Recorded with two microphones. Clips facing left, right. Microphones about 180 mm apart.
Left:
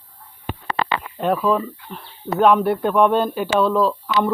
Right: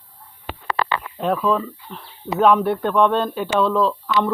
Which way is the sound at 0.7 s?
20° left (ahead or behind).